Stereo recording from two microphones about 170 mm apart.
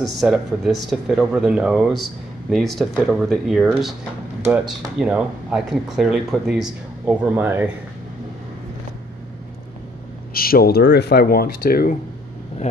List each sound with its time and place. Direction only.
0.0 s speech: centre (ahead or behind)
10.3 s speech: 60° left (ahead or behind)